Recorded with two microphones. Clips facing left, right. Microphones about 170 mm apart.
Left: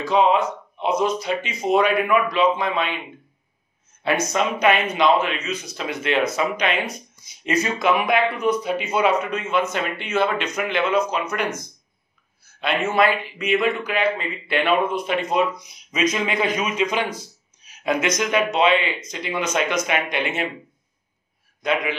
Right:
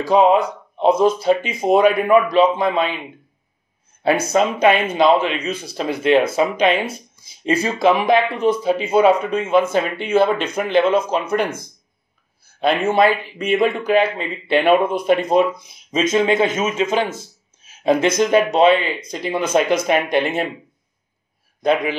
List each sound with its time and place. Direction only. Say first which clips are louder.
0.0 s a man's voice: right 4 dB; 40° right (ahead or behind)
1.4 s speech: right 4 dB; 50° right (ahead or behind)
2.0 s a man's voice: right 5 dB; 35° right (ahead or behind)
4.0 s a man's voice: right 5 dB; 35° right (ahead or behind)